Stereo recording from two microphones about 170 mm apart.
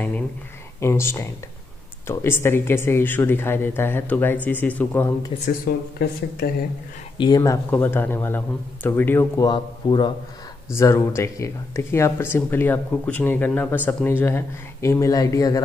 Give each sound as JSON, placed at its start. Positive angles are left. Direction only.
{"t": 0.7, "sound": "speech", "side_deg": 15}
{"t": 5.4, "sound": "speech", "side_deg": 55}
{"t": 7.2, "sound": "a man's voice", "side_deg": 25}
{"t": 7.7, "sound": "speech", "side_deg": 10}
{"t": 9.5, "sound": "a man's voice", "side_deg": 30}
{"t": 10.8, "sound": "speech", "side_deg": 15}